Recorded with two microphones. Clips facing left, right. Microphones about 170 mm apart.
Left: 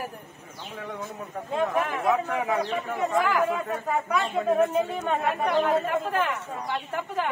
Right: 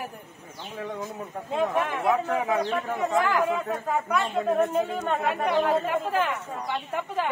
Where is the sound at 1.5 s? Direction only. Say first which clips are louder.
Even; centre (ahead or behind).